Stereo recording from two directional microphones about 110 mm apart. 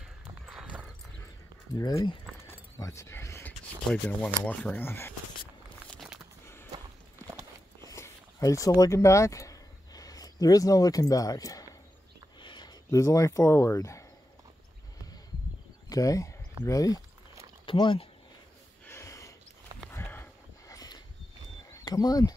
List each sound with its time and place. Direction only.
0.5 s clip-clop: 10° right (ahead or behind)
2.4 s keys jangling: 25° left (ahead or behind)
3.9 s speech: 10° left (ahead or behind)
6.4 s a sound: 25° left (ahead or behind)
7.8 s a sound: 30° left (ahead or behind)
12.9 s speech: 30° left (ahead or behind)
15.9 s speech: 30° left (ahead or behind)
17.6 s speech: 50° left (ahead or behind)
18.9 s gasp: 25° left (ahead or behind)
19.9 s a sound: 20° left (ahead or behind)
20.7 s a sound: 35° left (ahead or behind)
21.8 s speech: 35° left (ahead or behind)